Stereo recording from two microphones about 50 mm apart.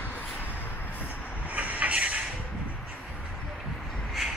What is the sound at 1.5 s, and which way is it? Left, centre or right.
Vehicle, right.